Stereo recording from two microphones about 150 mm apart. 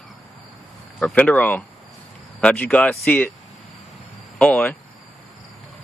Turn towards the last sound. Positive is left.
turn(degrees=10)  # may be behind; listen again after turning